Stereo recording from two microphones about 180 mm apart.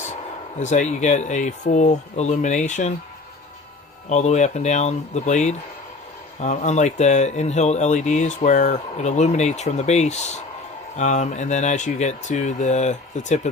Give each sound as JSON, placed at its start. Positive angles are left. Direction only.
{"t": 0.6, "sound": "speech", "side_deg": 40}
{"t": 4.1, "sound": "speech", "side_deg": 40}